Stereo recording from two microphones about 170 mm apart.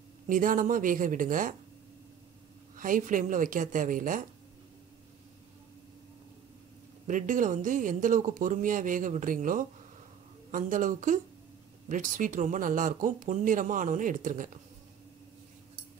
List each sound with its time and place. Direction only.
0.3 s speech: 50° right (ahead or behind)
2.7 s speech: 50° right (ahead or behind)
7.1 s speech: 50° right (ahead or behind)